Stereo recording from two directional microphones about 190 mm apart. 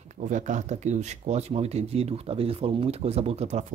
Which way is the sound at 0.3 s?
40° right (ahead or behind).